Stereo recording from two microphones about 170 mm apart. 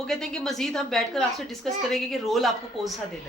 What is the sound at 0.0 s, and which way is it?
A woman's voice, 5° left (ahead or behind).